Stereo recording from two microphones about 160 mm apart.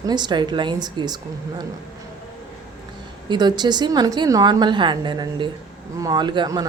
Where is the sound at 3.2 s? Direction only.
25° right (ahead or behind).